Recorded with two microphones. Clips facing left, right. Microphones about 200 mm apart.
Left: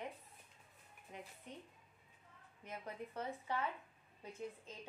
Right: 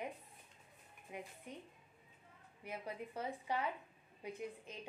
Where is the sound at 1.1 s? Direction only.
10° right (ahead or behind).